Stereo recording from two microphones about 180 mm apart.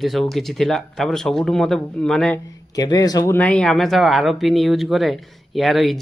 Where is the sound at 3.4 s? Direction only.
5° left (ahead or behind).